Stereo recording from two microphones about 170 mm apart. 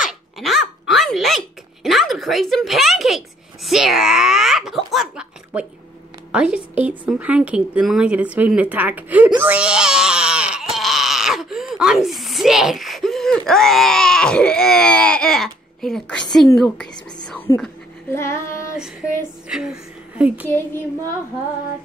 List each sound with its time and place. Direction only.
0.0 s a woman's voice: centre (ahead or behind)
9.4 s a sound: 10° right (ahead or behind)
17.5 s speech: 20° left (ahead or behind)
18.1 s child singing: 15° left (ahead or behind)
19.5 s a woman's voice: 5° right (ahead or behind)
20.4 s speech: 15° left (ahead or behind)